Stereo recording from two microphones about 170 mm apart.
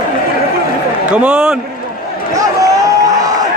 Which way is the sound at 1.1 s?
5° right (ahead or behind).